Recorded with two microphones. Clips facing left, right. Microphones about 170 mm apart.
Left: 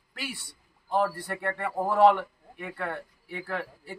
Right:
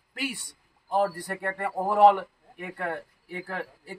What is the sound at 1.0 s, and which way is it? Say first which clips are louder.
A man's voice: right 1 dB; 15° right (ahead or behind).